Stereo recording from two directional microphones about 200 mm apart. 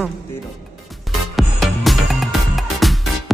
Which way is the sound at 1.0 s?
Centre (ahead or behind).